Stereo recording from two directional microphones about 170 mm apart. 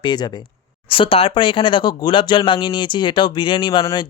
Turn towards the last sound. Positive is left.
turn(degrees=25)  # may be behind; listen again after turning